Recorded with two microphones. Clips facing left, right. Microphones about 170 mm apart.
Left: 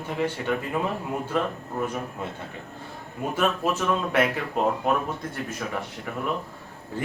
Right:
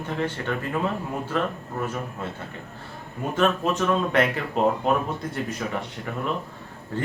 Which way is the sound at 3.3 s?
10° left (ahead or behind).